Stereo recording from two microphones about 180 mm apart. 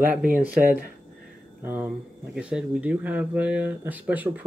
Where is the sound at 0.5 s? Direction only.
55° right (ahead or behind).